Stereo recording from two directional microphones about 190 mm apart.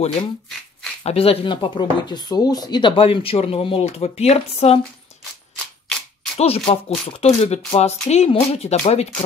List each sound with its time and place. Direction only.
1.0 s speech: 30° left (ahead or behind)
6.3 s speech: 30° left (ahead or behind)